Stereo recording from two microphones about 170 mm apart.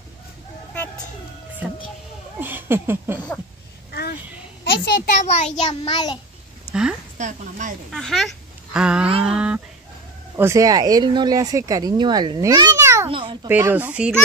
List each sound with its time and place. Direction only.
2.4 s a sound: 10° right (ahead or behind)
4.6 s a child's voice: 80° left
5.2 s child singing: 40° left (ahead or behind)
5.7 s child singing: 25° left (ahead or behind)
6.7 s a sound: 5° right (ahead or behind)
7.2 s a woman's voice: 45° right (ahead or behind)
7.9 s speech: centre (ahead or behind)
9.2 s a sound: 5° right (ahead or behind)
10.3 s speech: 15° right (ahead or behind)
13.1 s babbling: 30° right (ahead or behind)
13.5 s speech: 10° right (ahead or behind)